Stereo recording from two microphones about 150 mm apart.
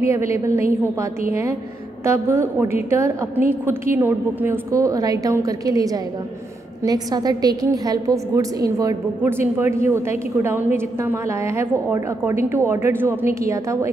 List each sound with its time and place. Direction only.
0.0 s a woman's voice: 20° right (ahead or behind)
2.0 s a woman's voice: 20° right (ahead or behind)